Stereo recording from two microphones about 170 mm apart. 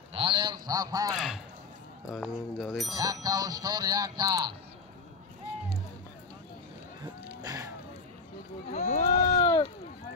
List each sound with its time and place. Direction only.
0.1 s speech: 30° right (ahead or behind)
1.1 s speech: centre (ahead or behind)
3.0 s speech: 20° right (ahead or behind)
7.4 s speech: 20° right (ahead or behind)
8.7 s a sound: 45° left (ahead or behind)
9.4 s a sound: 30° left (ahead or behind)